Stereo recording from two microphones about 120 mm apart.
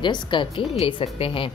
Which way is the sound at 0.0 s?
40° left (ahead or behind).